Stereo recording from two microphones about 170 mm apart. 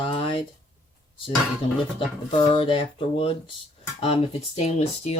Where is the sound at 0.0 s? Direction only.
30° left (ahead or behind).